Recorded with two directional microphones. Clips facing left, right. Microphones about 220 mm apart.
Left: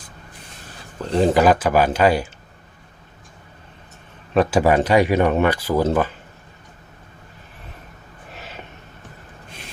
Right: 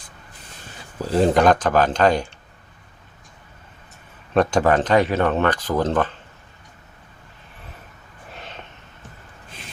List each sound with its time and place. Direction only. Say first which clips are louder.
1.0 s speech: even; centre (ahead or behind)
4.4 s speech: left 1 dB; 10° left (ahead or behind)
8.3 s a sound: left 1 dB; 5° left (ahead or behind)